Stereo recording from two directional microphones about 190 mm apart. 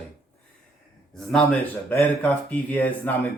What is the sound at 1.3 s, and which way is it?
Speech, 10° left (ahead or behind).